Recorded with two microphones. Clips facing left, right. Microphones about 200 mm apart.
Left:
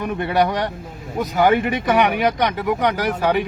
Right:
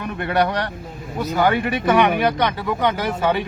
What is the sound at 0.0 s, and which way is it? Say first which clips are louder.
Speech: left 1 dB; 15° left (ahead or behind).